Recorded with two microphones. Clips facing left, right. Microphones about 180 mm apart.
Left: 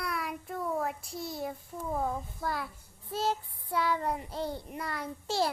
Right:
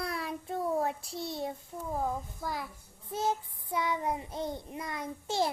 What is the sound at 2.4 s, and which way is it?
Child singing, 15° right (ahead or behind).